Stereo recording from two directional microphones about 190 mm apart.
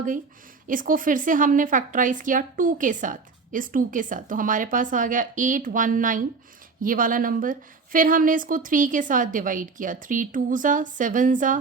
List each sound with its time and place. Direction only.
0.7 s speech: 45° right (ahead or behind)